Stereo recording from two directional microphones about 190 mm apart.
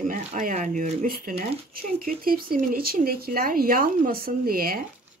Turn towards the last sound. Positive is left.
turn(degrees=-50)  # may be behind; listen again after turning